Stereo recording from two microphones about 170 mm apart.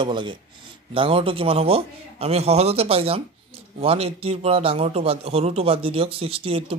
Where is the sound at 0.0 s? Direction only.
30° right (ahead or behind).